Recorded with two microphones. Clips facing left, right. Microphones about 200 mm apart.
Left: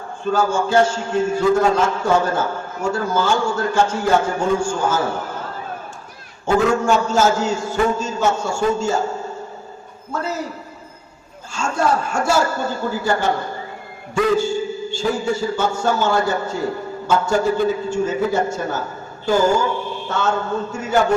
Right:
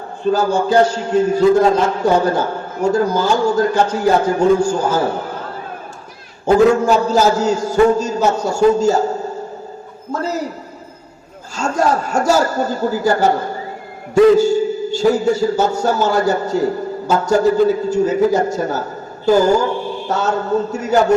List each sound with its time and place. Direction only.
0.3 s a man's voice: 35° right (ahead or behind)
6.4 s a man's voice: 35° right (ahead or behind)
10.1 s a man's voice: 40° right (ahead or behind)
11.5 s a man's voice: 40° right (ahead or behind)